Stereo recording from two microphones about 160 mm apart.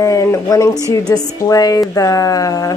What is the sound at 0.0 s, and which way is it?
A woman's voice, 20° left (ahead or behind).